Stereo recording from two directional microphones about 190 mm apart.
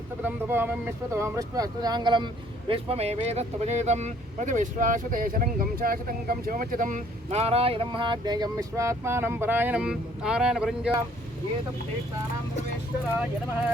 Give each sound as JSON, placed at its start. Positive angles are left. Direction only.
{"t": 0.3, "sound": "speech", "side_deg": -10}